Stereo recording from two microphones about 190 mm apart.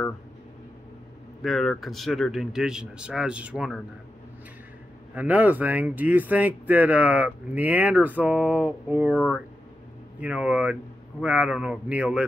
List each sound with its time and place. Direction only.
1.4 s a man's voice: centre (ahead or behind)
5.1 s speech: 10° right (ahead or behind)
10.2 s speech: 5° right (ahead or behind)